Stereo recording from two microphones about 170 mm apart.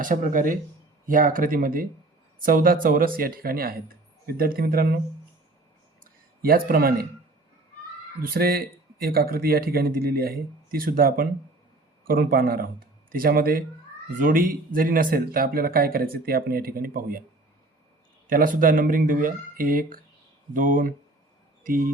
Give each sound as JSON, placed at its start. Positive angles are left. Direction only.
{"t": 0.0, "sound": "speech", "side_deg": -50}
{"t": 6.4, "sound": "speech", "side_deg": -60}
{"t": 8.2, "sound": "speech", "side_deg": -60}
{"t": 18.3, "sound": "speech", "side_deg": -55}